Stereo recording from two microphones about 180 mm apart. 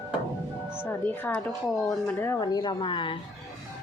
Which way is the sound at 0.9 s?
10° left (ahead or behind).